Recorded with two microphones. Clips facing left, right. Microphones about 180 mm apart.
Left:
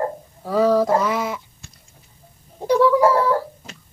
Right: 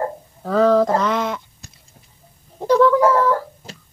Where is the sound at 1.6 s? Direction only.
40° right (ahead or behind).